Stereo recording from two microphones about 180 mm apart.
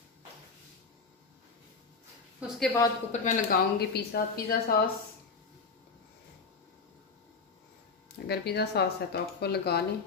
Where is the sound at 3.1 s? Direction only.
45° left (ahead or behind).